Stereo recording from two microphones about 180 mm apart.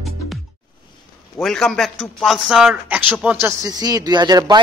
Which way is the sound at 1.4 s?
Centre (ahead or behind).